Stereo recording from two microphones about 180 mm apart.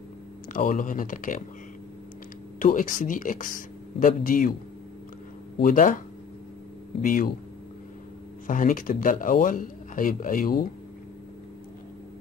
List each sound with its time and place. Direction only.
0.5 s speech: 45° left (ahead or behind)
2.6 s speech: 50° left (ahead or behind)
5.6 s speech: 50° left (ahead or behind)
7.0 s speech: 50° left (ahead or behind)
8.5 s speech: 50° left (ahead or behind)